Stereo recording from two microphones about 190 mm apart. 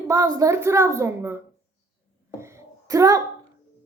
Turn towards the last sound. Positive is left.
turn(degrees=-15)  # may be behind; listen again after turning